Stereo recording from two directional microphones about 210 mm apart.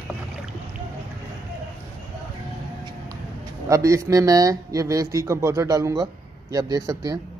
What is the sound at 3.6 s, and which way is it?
A man's voice, 15° right (ahead or behind).